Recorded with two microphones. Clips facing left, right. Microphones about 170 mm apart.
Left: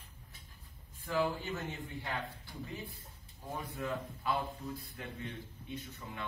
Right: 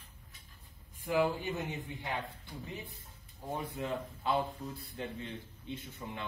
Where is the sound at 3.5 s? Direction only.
25° right (ahead or behind).